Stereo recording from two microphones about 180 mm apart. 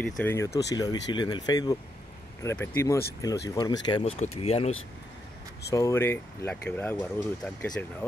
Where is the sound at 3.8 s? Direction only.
30° left (ahead or behind).